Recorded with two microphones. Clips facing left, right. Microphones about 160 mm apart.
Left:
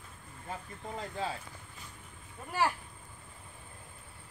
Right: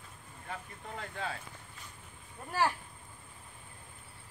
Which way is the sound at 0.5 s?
30° left (ahead or behind).